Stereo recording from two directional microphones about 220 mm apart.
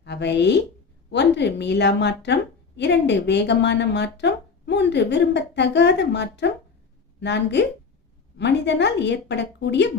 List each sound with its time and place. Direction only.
0.0 s a woman's voice: 50° left (ahead or behind)